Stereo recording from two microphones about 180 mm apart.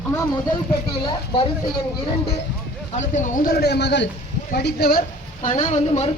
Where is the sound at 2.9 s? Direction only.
40° left (ahead or behind); by 4.1 s 75° left (ahead or behind).